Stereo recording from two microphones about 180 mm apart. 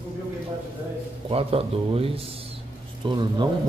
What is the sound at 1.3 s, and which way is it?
A man's voice, 30° right (ahead or behind).